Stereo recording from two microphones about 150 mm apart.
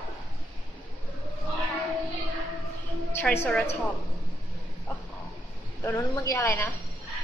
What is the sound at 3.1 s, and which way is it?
Speech, 15° left (ahead or behind).